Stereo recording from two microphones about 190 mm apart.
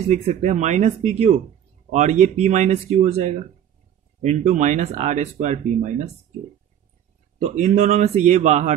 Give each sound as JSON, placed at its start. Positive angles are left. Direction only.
{"t": 0.1, "sound": "speech", "side_deg": -40}
{"t": 7.3, "sound": "speech", "side_deg": -35}